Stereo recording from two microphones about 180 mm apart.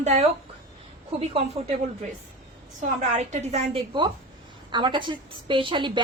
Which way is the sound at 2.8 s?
40° right (ahead or behind).